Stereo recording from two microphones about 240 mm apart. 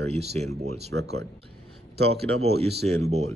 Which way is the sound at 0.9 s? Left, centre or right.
Right.